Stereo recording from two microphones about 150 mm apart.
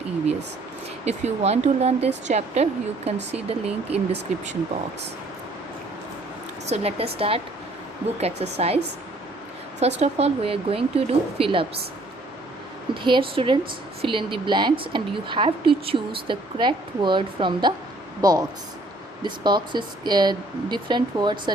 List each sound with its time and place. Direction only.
1.0 s speech: 45° right (ahead or behind)
6.7 s a woman's voice: 40° right (ahead or behind)
9.8 s a woman's voice: 45° right (ahead or behind)
12.9 s a woman's voice: 35° right (ahead or behind)